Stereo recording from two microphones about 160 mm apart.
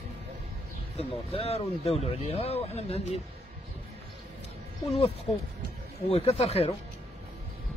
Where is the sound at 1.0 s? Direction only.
35° left (ahead or behind).